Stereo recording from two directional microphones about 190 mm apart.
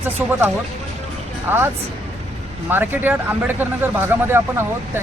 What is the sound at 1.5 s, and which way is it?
Speech, 10° right (ahead or behind).